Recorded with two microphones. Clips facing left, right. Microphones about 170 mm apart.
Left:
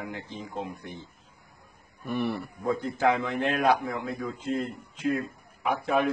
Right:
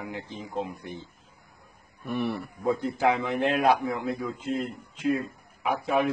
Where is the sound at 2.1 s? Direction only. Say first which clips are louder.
Even; centre (ahead or behind).